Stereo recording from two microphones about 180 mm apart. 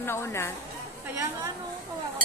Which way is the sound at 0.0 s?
15° left (ahead or behind).